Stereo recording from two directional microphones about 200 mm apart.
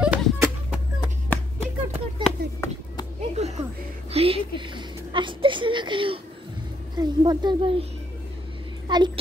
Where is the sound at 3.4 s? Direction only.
35° right (ahead or behind).